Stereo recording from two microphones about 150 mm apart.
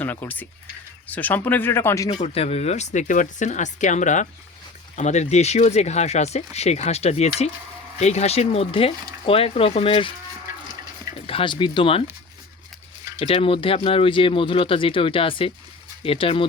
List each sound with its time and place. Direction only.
0.0 s speech: 10° left (ahead or behind)
2.0 s speech: 45° left (ahead or behind)
11.3 s speech: 35° left (ahead or behind)
13.1 s speech: 40° left (ahead or behind)